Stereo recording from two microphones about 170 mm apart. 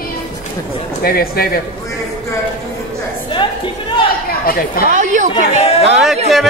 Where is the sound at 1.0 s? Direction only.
60° left (ahead or behind).